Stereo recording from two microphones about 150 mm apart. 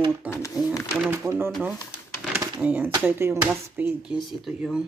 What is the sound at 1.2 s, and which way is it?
Speech, 15° right (ahead or behind).